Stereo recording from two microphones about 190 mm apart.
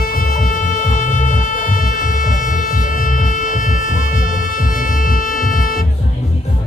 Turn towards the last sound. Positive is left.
turn(degrees=45)  # may be behind; listen again after turning